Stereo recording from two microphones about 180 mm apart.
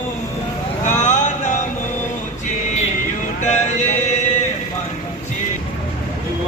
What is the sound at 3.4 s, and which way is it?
Music, 40° left (ahead or behind).